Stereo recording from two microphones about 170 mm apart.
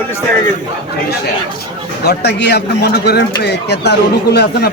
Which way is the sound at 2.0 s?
80° left.